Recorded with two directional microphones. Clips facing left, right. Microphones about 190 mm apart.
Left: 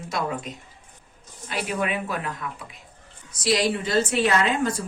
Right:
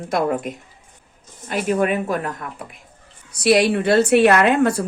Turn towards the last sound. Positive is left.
turn(degrees=-65)  # may be behind; listen again after turning